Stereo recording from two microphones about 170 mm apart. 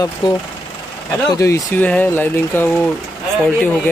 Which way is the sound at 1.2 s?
20° left (ahead or behind).